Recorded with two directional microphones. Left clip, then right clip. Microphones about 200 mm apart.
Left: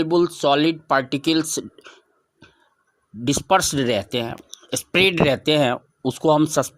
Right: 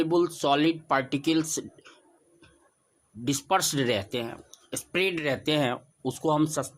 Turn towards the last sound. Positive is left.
turn(degrees=35)  # may be behind; listen again after turning